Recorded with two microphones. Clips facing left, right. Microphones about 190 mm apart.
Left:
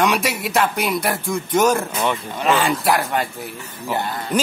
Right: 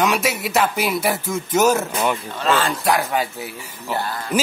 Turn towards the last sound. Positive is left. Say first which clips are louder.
# left 1 dB
turn(degrees=20)  # may be behind; listen again after turning